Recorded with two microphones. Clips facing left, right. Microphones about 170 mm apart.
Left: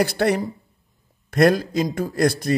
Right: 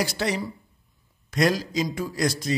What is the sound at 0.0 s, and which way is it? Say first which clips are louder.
A man's voice: left 7 dB; 55° left (ahead or behind).